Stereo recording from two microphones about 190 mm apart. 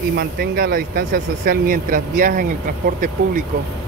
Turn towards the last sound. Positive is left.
turn(degrees=-45)  # may be behind; listen again after turning